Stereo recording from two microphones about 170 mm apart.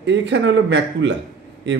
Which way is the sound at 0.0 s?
90° right.